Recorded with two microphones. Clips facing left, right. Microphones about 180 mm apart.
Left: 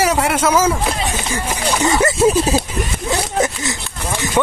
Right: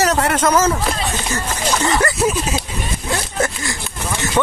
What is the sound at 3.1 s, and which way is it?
Speech, 20° left (ahead or behind).